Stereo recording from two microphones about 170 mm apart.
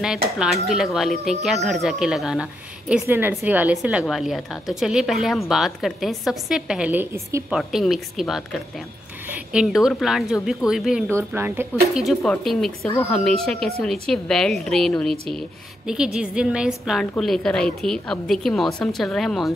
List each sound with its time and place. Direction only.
0.0 s a woman's voice: 5° right (ahead or behind)
7.5 s a woman's voice: centre (ahead or behind)
11.1 s a woman's voice: 15° right (ahead or behind); by 19.5 s centre (ahead or behind)